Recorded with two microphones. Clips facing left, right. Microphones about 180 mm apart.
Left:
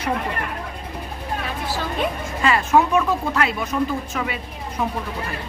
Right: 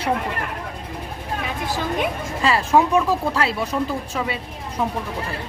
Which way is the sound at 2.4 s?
30° right (ahead or behind).